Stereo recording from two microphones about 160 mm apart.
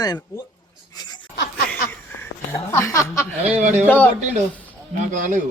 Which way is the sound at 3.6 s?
45° right (ahead or behind).